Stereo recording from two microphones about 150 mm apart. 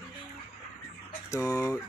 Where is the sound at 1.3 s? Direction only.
25° left (ahead or behind).